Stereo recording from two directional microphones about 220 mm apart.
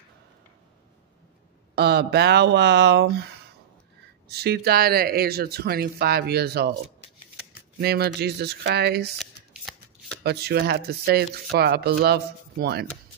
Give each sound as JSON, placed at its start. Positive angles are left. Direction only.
{"t": 1.8, "sound": "speech", "side_deg": -50}
{"t": 4.3, "sound": "speech", "side_deg": -45}
{"t": 7.8, "sound": "speech", "side_deg": -45}
{"t": 9.2, "sound": "shuffling cards", "side_deg": 0}
{"t": 10.2, "sound": "speech", "side_deg": -45}